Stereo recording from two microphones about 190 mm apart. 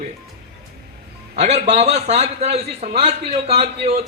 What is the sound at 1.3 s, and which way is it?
A man's voice, 35° right (ahead or behind).